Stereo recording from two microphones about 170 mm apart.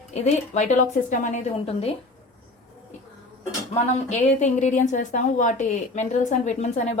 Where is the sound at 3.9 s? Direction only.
40° left (ahead or behind).